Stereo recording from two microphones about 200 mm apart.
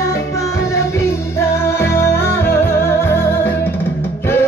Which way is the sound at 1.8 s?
10° left (ahead or behind).